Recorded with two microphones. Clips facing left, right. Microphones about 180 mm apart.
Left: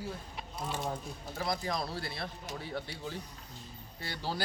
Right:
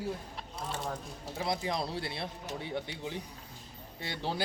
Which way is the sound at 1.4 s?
25° right (ahead or behind).